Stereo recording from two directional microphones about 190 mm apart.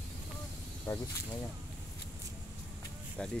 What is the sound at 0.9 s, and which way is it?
Speech, 25° left (ahead or behind).